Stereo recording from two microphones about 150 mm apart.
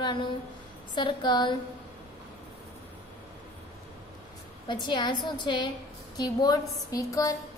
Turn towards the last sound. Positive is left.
turn(degrees=20)  # may be behind; listen again after turning